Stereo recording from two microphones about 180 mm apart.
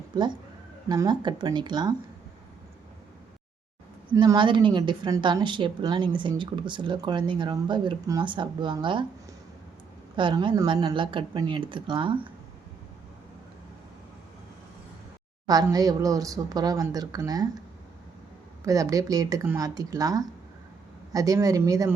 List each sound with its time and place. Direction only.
0.9 s a woman's voice: 25° right (ahead or behind)
4.2 s a woman's voice: 25° right (ahead or behind)
10.2 s a woman's voice: 25° right (ahead or behind)
15.4 s a woman's voice: 20° right (ahead or behind)
18.6 s a woman's voice: 20° right (ahead or behind)